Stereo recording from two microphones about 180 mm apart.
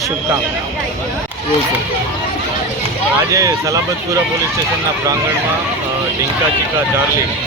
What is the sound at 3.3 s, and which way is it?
Speech, 20° right (ahead or behind).